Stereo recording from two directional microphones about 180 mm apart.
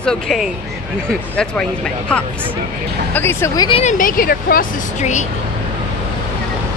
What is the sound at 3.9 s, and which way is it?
Speech, 50° left (ahead or behind).